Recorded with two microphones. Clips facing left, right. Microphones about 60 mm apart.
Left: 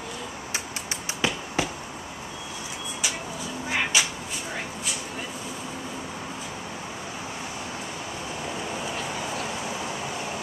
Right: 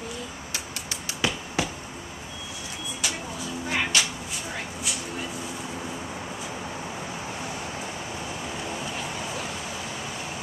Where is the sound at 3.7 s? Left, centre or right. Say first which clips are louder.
Left 1 dB; centre.